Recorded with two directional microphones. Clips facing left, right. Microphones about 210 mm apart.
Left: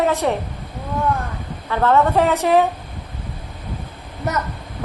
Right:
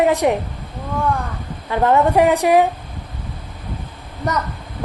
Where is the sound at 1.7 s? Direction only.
15° right (ahead or behind).